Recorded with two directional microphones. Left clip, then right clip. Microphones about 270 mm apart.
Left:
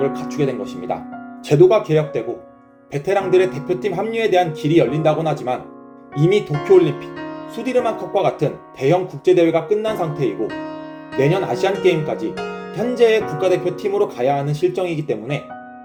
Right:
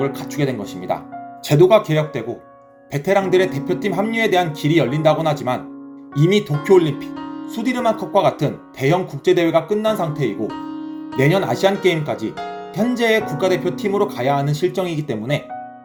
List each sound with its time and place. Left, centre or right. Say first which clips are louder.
0.0 s speech: left 2 dB; right